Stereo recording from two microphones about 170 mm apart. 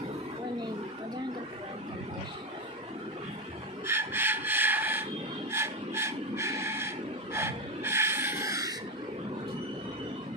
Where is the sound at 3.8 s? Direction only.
15° right (ahead or behind).